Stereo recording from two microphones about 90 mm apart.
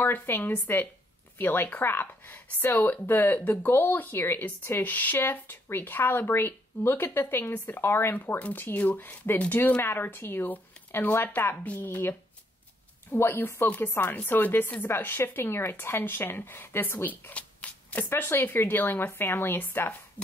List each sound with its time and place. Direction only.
0.0 s speech: 25° left (ahead or behind)